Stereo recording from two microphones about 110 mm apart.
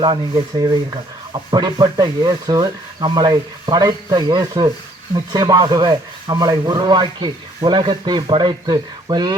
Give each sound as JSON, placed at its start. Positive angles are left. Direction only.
{"t": 0.6, "sound": "speech", "side_deg": -40}